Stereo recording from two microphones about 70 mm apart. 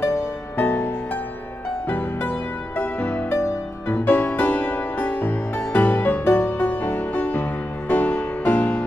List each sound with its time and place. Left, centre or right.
0.0 s music: left
1.9 s music: left